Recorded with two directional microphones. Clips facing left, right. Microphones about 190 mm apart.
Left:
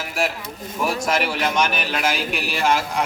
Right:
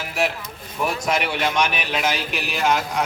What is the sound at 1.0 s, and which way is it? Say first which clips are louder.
Speech: right 1 dB; centre (ahead or behind).